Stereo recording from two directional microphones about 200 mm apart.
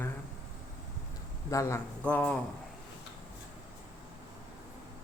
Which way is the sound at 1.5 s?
15° left (ahead or behind).